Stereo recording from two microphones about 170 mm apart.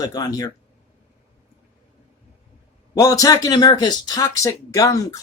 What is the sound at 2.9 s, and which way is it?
Speech, 20° left (ahead or behind).